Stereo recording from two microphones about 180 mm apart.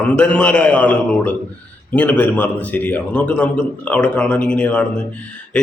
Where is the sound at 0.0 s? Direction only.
10° left (ahead or behind).